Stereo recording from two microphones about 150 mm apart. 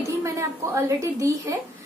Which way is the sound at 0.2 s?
20° right (ahead or behind).